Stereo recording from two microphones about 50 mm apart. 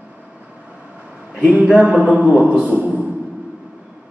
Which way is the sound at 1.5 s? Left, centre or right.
Right.